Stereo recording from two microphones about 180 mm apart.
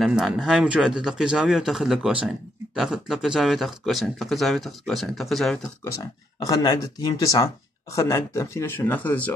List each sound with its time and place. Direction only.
0.0 s speech: centre (ahead or behind)
6.4 s speech: 20° left (ahead or behind)